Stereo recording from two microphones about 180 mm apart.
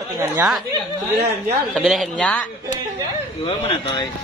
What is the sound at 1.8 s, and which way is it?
Speech, centre (ahead or behind).